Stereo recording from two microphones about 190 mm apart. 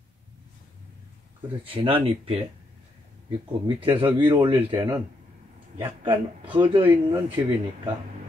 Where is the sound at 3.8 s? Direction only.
25° right (ahead or behind).